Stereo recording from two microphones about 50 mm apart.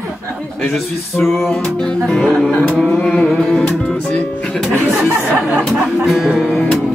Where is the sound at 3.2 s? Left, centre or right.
Centre.